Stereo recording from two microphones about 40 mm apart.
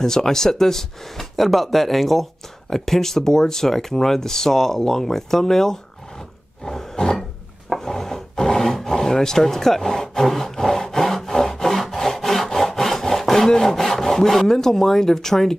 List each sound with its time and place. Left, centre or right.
0.0 s speech: centre
6.6 s roar: centre
7.7 s filing: centre
11.8 s sawing: centre
13.5 s speech: centre